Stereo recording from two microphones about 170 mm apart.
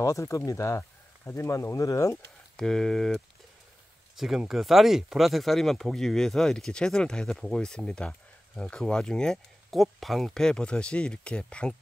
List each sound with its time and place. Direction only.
0.0 s speech: 20° left (ahead or behind)
2.5 s speech: 5° left (ahead or behind)
4.2 s speech: centre (ahead or behind)